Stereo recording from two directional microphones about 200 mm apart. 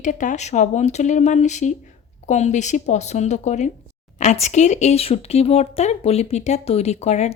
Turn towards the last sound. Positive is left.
turn(degrees=35)  # may be behind; listen again after turning